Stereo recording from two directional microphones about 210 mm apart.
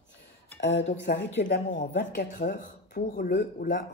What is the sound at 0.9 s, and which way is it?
Speech, 55° left (ahead or behind).